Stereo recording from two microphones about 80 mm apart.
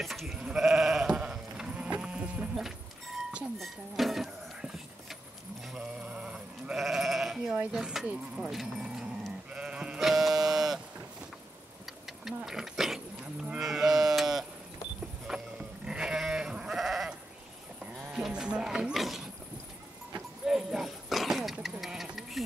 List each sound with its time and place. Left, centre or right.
0.0 s goat: centre
0.4 s sheep: centre
3.5 s a sound: centre
5.8 s sheep: centre
7.7 s speech: centre
9.5 s sheep: centre
12.1 s a sound: centre
13.2 s cattle: centre
15.2 s goat: centre
18.1 s music: centre
20.4 s a sound: centre